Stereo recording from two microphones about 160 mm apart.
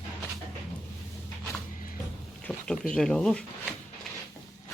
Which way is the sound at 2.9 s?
5° left (ahead or behind).